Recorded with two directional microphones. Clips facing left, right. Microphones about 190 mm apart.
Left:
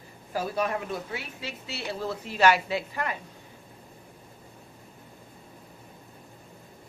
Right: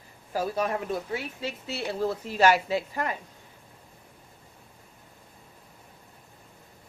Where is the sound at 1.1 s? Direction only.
45° right (ahead or behind).